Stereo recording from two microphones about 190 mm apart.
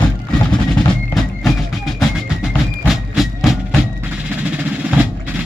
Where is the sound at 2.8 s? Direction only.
5° right (ahead or behind).